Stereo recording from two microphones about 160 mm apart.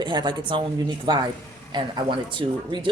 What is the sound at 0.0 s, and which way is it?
Speech, 30° right (ahead or behind).